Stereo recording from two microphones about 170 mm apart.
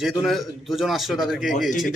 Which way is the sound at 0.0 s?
Centre (ahead or behind).